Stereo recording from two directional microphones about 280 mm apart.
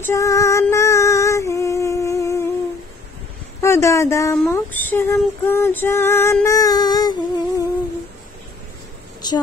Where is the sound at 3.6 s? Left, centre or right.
Centre.